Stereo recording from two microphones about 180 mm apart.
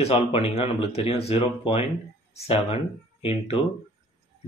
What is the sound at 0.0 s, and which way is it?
Speech, 30° left (ahead or behind).